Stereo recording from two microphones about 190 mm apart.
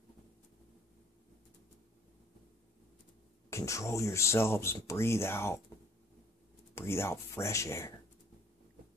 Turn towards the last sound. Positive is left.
turn(degrees=15)  # may be behind; listen again after turning